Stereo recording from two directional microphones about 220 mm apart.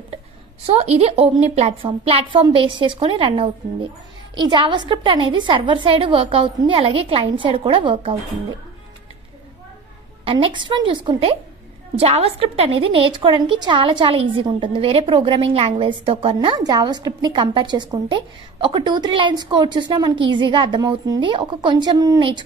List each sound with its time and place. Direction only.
0.7 s a woman's voice: 25° right (ahead or behind)
10.2 s a woman's voice: 25° right (ahead or behind)